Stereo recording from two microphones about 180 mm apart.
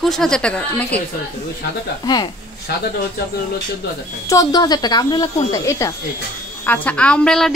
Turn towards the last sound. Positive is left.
turn(degrees=5)  # may be behind; listen again after turning